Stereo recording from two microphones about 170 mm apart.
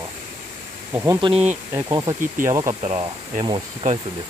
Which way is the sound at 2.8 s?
40° right (ahead or behind).